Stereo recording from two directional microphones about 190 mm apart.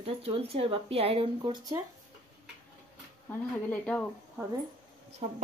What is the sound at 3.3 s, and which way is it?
Speech, 5° left (ahead or behind).